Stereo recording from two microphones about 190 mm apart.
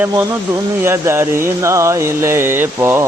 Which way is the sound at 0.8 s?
15° right (ahead or behind).